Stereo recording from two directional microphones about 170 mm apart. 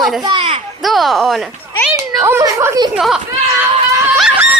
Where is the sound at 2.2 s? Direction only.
15° right (ahead or behind).